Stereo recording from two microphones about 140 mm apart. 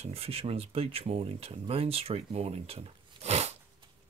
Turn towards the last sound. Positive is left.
turn(degrees=-50)  # may be behind; listen again after turning